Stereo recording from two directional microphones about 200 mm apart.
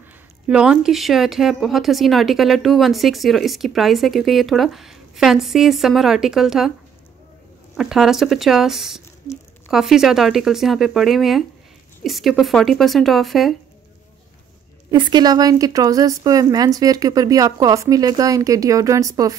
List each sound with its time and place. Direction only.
0.5 s a woman's voice: 5° right (ahead or behind)
7.7 s a woman's voice: 5° right (ahead or behind)
14.9 s a woman's voice: 20° right (ahead or behind)